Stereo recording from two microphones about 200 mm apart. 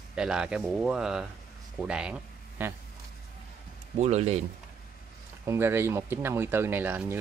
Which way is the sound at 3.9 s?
35° right (ahead or behind).